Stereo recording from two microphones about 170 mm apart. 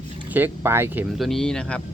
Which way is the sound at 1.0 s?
Centre (ahead or behind).